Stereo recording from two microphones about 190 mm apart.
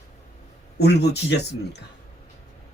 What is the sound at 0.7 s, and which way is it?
Speech, 60° left (ahead or behind).